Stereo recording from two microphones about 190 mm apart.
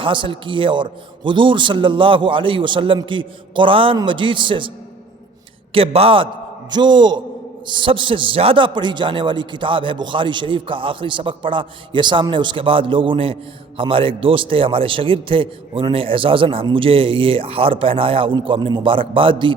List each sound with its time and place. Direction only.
0.0 s a man's voice: 25° right (ahead or behind)
5.7 s a man's voice: 30° right (ahead or behind)